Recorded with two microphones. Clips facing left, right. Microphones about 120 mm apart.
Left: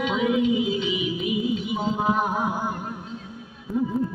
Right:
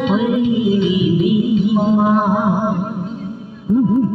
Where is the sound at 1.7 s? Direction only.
45° right (ahead or behind).